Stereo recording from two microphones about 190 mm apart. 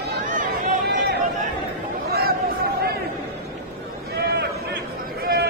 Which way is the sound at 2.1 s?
55° right (ahead or behind).